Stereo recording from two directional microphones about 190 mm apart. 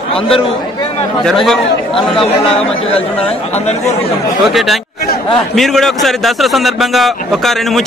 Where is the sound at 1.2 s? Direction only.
Centre (ahead or behind).